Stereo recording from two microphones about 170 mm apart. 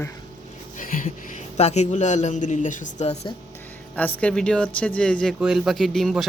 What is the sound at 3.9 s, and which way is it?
Speech, 10° left (ahead or behind).